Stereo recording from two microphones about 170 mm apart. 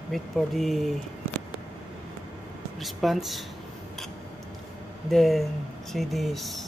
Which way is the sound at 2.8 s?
Centre (ahead or behind).